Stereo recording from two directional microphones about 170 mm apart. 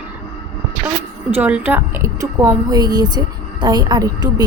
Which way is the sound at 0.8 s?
10° right (ahead or behind).